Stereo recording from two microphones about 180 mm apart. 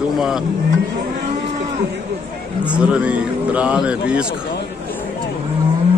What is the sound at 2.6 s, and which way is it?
A man's voice, 5° right (ahead or behind).